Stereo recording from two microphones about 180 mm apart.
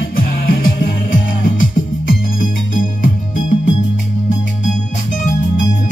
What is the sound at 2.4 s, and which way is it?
Music, 50° left (ahead or behind).